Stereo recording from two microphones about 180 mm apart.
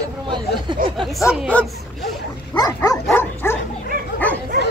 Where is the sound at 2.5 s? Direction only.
20° left (ahead or behind).